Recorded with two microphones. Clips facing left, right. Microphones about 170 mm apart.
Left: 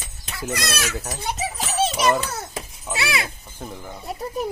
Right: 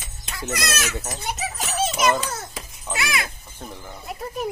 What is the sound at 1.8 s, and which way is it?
Children playing, 30° left (ahead or behind).